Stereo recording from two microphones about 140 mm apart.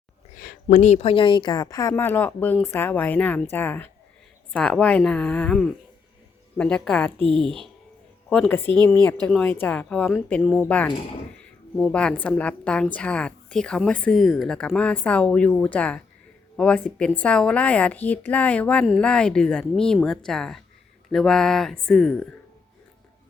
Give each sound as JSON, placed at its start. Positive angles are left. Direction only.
{"t": 0.3, "sound": "a woman's voice", "side_deg": 75}
{"t": 1.9, "sound": "a woman's voice", "side_deg": 15}